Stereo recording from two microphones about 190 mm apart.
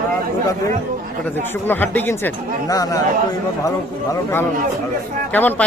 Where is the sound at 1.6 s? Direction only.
10° left (ahead or behind).